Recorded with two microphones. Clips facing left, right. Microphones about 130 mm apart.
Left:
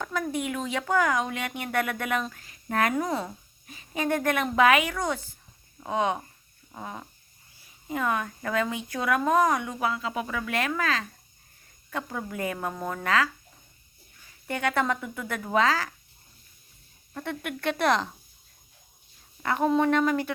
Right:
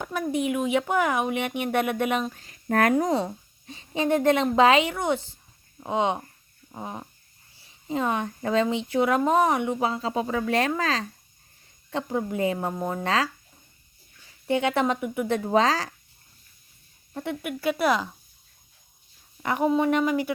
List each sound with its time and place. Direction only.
0.0 s speech: 20° right (ahead or behind)
2.4 s speech: 40° right (ahead or behind); by 6.2 s 20° right (ahead or behind)
6.7 s fart: 20° right (ahead or behind)
7.9 s speech: 25° right (ahead or behind)
14.4 s speech: 20° right (ahead or behind)
17.4 s speech: 5° right (ahead or behind)
19.4 s speech: 15° right (ahead or behind)